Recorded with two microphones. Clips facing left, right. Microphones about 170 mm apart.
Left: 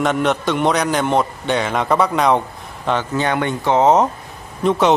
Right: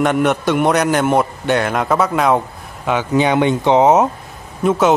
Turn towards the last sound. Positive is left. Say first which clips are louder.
# right 1 dB
turn(degrees=-5)  # may be behind; listen again after turning